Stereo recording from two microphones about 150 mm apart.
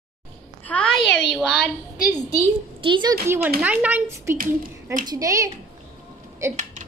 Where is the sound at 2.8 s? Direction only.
30° right (ahead or behind).